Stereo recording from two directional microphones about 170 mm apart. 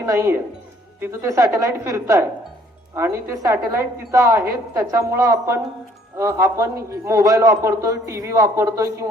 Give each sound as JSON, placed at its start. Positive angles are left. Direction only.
{"t": 0.0, "sound": "a woman's voice", "side_deg": -15}